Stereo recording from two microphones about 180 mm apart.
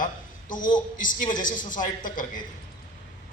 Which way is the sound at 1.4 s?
45° left (ahead or behind).